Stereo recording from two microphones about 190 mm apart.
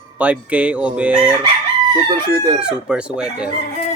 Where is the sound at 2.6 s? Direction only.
5° right (ahead or behind).